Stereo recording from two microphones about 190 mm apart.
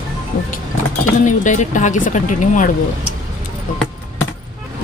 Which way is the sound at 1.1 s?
40° left (ahead or behind).